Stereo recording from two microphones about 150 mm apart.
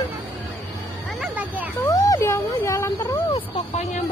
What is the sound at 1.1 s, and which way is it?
Speech, 10° right (ahead or behind).